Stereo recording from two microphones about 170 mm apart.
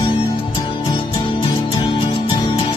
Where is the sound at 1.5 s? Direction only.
30° left (ahead or behind).